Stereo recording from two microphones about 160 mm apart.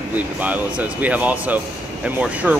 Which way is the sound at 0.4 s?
10° right (ahead or behind).